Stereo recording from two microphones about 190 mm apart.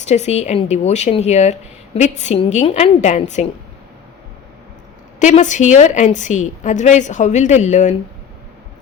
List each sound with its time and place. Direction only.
0.0 s a woman's voice: 35° left (ahead or behind)
5.2 s a woman's voice: 40° left (ahead or behind)